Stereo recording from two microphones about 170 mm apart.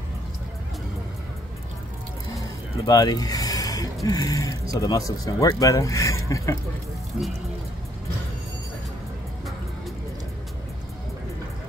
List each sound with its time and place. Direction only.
2.9 s speech: 20° left (ahead or behind)